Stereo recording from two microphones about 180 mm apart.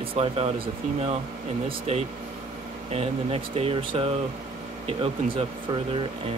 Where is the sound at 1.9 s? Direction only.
35° right (ahead or behind).